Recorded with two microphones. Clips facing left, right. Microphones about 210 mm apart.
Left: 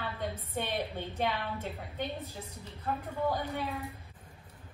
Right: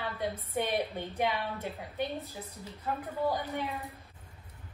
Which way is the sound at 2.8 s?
15° right (ahead or behind).